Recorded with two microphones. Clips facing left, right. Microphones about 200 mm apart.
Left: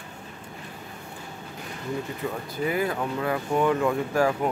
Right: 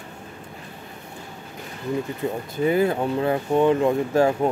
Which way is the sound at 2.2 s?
25° right (ahead or behind).